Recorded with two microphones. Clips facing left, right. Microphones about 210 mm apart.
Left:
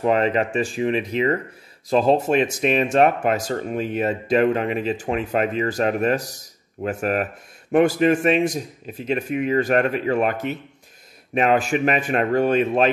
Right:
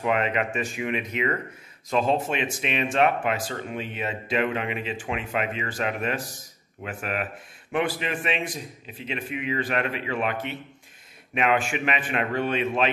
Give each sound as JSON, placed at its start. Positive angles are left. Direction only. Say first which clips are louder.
{"t": 0.0, "sound": "a man's voice", "louder": "left 6 dB", "side_deg": 35}